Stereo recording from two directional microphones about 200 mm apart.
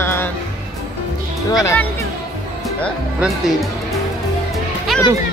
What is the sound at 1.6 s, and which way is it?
Speech, 15° left (ahead or behind).